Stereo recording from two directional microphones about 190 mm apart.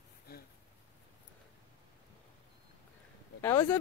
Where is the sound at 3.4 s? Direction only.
15° left (ahead or behind).